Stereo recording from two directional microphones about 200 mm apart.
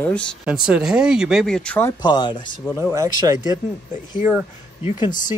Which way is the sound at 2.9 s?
15° right (ahead or behind).